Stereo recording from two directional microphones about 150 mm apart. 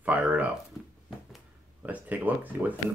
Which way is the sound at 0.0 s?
10° right (ahead or behind).